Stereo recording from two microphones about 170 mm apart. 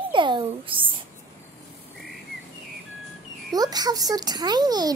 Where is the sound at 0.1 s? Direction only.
30° right (ahead or behind).